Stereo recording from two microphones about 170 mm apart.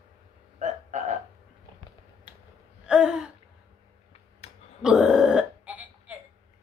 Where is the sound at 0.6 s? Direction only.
45° right (ahead or behind).